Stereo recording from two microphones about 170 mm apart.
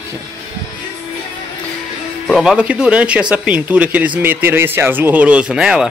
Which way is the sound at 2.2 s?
Centre (ahead or behind).